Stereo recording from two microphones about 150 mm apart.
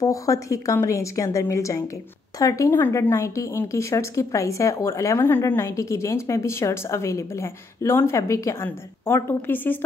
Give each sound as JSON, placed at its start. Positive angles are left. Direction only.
{"t": 0.0, "sound": "speech", "side_deg": 20}